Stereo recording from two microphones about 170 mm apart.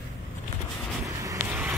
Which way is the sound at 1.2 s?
15° right (ahead or behind).